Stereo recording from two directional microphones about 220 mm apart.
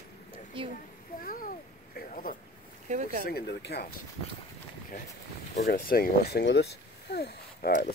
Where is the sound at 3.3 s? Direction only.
45° left (ahead or behind).